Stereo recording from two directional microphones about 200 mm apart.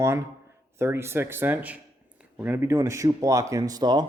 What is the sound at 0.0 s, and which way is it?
Speech, 15° right (ahead or behind).